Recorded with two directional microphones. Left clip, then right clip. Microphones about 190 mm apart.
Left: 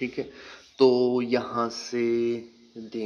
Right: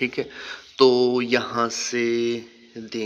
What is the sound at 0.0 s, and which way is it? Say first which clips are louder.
Speech: right 6 dB; centre (ahead or behind).